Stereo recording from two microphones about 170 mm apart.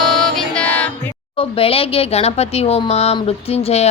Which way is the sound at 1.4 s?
35° left (ahead or behind).